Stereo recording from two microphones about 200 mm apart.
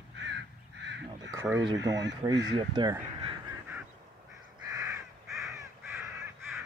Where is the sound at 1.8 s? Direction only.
65° right (ahead or behind).